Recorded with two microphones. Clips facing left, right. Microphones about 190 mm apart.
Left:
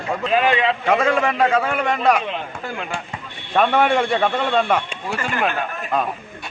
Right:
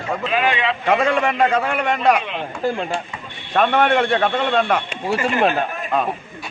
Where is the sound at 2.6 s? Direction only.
30° right (ahead or behind).